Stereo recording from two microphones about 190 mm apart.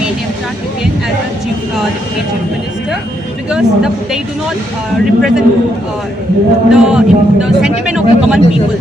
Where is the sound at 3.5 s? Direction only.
5° right (ahead or behind).